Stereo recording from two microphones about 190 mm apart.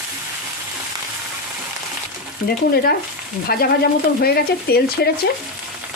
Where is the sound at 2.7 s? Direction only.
55° left (ahead or behind).